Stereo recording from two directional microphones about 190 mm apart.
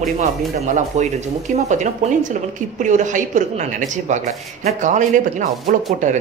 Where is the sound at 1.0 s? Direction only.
40° right (ahead or behind).